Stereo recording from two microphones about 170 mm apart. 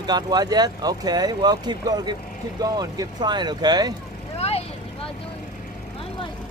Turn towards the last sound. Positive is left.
turn(degrees=35)  # may be behind; listen again after turning